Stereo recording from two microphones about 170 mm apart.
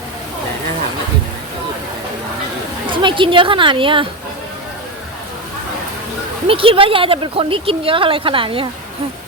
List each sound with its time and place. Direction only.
2.8 s a woman's voice: 30° right (ahead or behind)
6.5 s a woman's voice: 30° right (ahead or behind)